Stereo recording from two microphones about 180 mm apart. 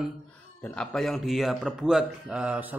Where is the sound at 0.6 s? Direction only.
5° left (ahead or behind).